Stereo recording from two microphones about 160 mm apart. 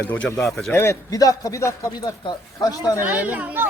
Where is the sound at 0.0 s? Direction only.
15° left (ahead or behind).